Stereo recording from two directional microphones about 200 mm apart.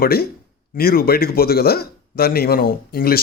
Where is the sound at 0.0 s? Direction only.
50° left (ahead or behind).